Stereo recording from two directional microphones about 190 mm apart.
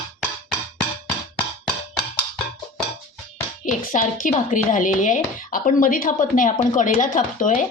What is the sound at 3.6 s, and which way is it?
Speech, 40° left (ahead or behind).